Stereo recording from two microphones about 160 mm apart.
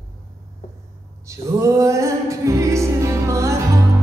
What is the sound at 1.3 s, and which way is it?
Music, 20° right (ahead or behind).